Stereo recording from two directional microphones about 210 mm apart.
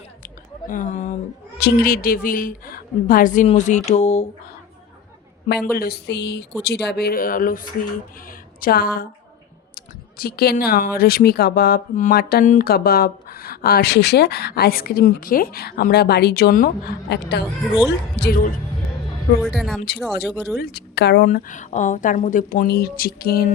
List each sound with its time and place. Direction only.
0.7 s speech: 35° left (ahead or behind)
5.6 s speech: 45° left (ahead or behind)
8.3 s a sound: 45° left (ahead or behind)
9.7 s speech: 45° left (ahead or behind)
19.4 s speech: centre (ahead or behind)
20.6 s speech: 50° left (ahead or behind)